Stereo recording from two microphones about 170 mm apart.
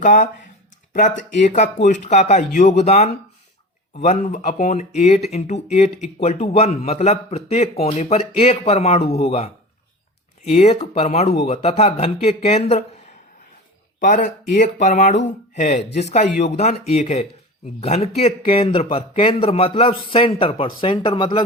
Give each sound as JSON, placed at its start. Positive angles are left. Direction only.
{"t": 0.0, "sound": "speech", "side_deg": 50}
{"t": 10.5, "sound": "speech", "side_deg": 35}
{"t": 14.0, "sound": "speech", "side_deg": 50}